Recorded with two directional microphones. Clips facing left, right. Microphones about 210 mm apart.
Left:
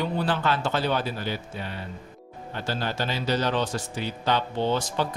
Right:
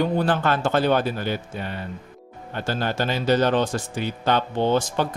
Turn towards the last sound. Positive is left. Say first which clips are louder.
# right 4 dB
turn(degrees=-50)  # may be behind; listen again after turning